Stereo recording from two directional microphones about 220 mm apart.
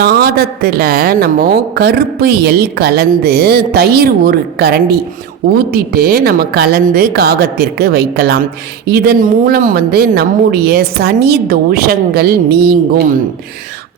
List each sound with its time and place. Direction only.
0.0 s a woman's voice: 45° right (ahead or behind)